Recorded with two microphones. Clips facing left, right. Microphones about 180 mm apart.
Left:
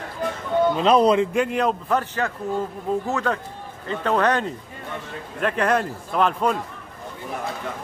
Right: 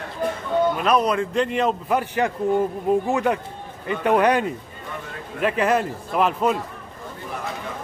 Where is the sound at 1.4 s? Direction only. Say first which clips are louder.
Even; centre (ahead or behind).